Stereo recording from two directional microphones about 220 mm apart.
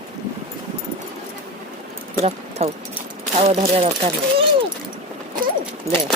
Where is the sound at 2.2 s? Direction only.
30° right (ahead or behind).